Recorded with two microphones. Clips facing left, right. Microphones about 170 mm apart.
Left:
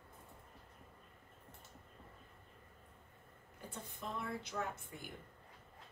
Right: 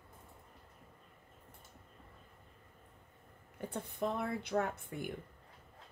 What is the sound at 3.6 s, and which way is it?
A woman's voice, 60° right (ahead or behind).